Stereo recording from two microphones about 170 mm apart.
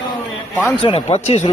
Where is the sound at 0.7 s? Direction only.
30° left (ahead or behind).